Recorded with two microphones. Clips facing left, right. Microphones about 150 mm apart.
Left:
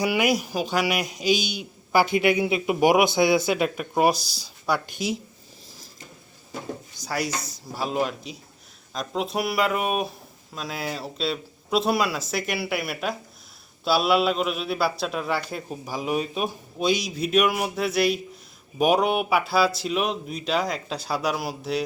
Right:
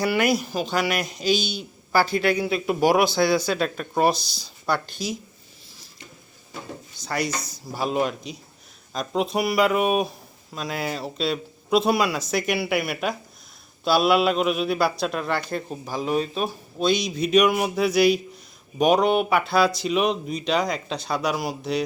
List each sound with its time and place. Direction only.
0.0 s a man's voice: 10° left (ahead or behind)
4.9 s speech: 25° left (ahead or behind)
7.0 s a man's voice: 5° left (ahead or behind)